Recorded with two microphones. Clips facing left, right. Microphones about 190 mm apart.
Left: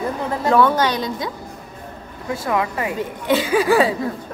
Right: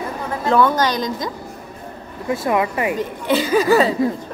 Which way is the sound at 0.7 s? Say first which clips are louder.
Even; 5° left (ahead or behind).